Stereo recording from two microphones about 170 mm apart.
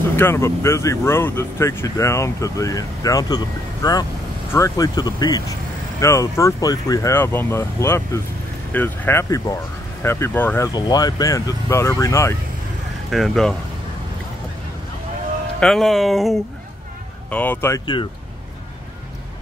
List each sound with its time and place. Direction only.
0.1 s speech: 15° left (ahead or behind)
10.7 s speech: 25° left (ahead or behind)
13.1 s speech: centre (ahead or behind)
15.6 s speech: centre (ahead or behind); by 18.0 s 20° left (ahead or behind)